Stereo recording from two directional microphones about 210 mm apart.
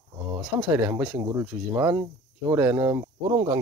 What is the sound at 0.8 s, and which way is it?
Speech, 10° right (ahead or behind).